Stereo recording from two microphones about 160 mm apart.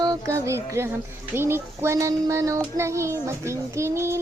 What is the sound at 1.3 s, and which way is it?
Child singing, 15° right (ahead or behind).